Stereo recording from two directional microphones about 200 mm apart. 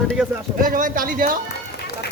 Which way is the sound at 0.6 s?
45° right (ahead or behind).